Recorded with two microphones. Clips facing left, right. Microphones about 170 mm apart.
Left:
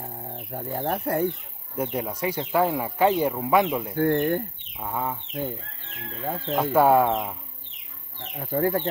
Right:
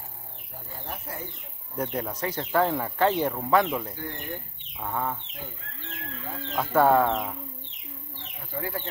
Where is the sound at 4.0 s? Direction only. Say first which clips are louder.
Left 15 dB; 60° left (ahead or behind).